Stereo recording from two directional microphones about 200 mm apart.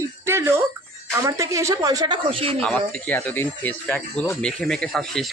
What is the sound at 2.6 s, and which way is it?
Speech, 5° left (ahead or behind).